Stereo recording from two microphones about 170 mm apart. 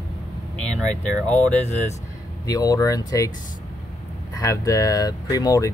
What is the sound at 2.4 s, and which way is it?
Speech, 20° left (ahead or behind).